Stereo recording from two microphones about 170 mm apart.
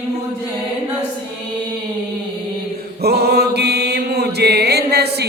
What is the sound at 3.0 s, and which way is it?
Mantra, 75° right (ahead or behind).